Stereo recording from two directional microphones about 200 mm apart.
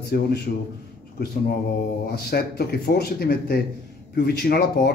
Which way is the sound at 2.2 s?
55° left (ahead or behind).